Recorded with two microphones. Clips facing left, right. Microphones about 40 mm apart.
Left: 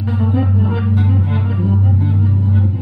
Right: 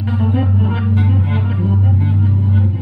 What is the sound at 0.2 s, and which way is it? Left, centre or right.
Music, centre.